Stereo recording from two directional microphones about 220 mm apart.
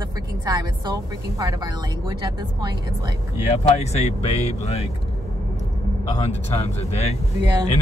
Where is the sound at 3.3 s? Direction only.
30° left (ahead or behind).